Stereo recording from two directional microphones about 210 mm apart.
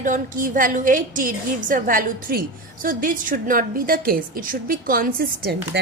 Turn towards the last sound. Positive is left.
turn(degrees=-45)  # may be behind; listen again after turning